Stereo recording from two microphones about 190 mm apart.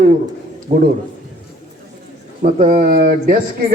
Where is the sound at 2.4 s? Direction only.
40° right (ahead or behind).